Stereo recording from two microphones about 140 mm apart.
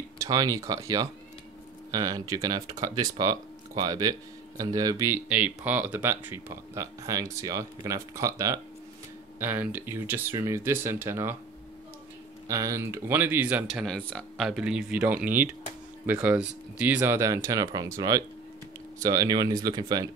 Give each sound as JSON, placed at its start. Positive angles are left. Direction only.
{"t": 0.2, "sound": "speech", "side_deg": -25}
{"t": 12.4, "sound": "speech", "side_deg": -20}